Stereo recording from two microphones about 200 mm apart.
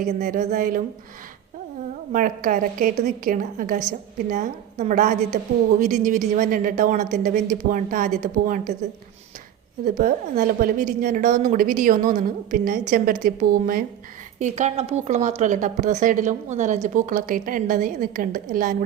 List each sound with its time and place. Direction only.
0.0 s a woman's voice: 40° right (ahead or behind)
2.1 s a woman's voice: 45° right (ahead or behind)
10.0 s a woman's voice: 40° right (ahead or behind)